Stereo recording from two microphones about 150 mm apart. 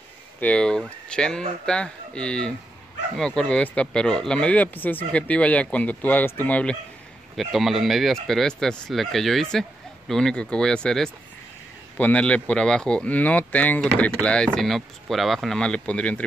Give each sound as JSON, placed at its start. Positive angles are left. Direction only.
{"t": 0.4, "sound": "speech", "side_deg": 5}